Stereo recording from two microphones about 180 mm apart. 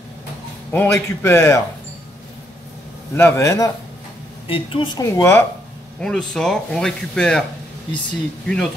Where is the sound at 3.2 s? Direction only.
15° left (ahead or behind).